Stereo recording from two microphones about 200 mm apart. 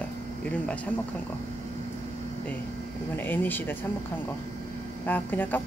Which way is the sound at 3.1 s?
10° left (ahead or behind).